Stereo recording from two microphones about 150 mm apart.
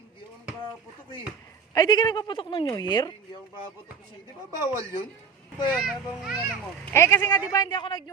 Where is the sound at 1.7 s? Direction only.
25° left (ahead or behind).